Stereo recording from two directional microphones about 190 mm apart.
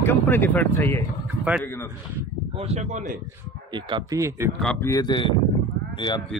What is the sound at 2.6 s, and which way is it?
Speech, 35° right (ahead or behind).